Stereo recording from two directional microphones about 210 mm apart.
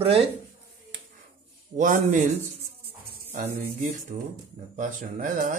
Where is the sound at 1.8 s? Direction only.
35° right (ahead or behind).